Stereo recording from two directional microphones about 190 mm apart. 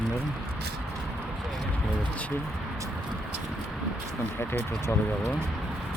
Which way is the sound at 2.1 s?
5° left (ahead or behind).